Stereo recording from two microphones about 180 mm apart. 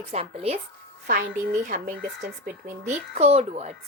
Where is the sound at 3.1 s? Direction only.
40° right (ahead or behind).